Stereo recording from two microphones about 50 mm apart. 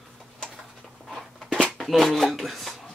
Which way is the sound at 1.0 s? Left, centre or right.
Centre.